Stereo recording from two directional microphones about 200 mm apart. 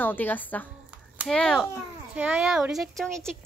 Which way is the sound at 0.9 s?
5° right (ahead or behind).